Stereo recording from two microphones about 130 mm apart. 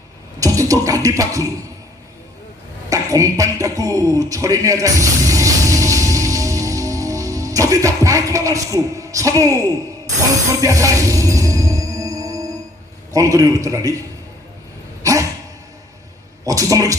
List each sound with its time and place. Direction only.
0.3 s speech: 25° right (ahead or behind)
2.9 s a man's voice: 25° right (ahead or behind)
10.6 s music: 25° right (ahead or behind)
13.1 s a man's voice: 25° right (ahead or behind)
15.0 s dog: 25° right (ahead or behind)
16.5 s a sound: 25° right (ahead or behind)